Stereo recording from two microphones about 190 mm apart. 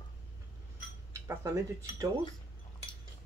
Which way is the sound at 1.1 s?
15° right (ahead or behind).